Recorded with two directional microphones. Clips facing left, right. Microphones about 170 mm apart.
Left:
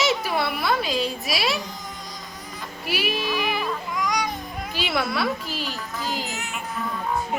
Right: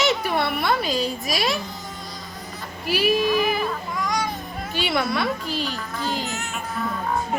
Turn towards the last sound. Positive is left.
turn(degrees=0)  # may be behind; listen again after turning